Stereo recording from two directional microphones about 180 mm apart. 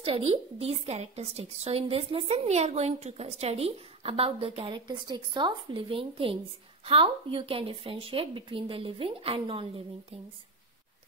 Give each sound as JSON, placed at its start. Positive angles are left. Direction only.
{"t": 0.1, "sound": "a woman's voice", "side_deg": -35}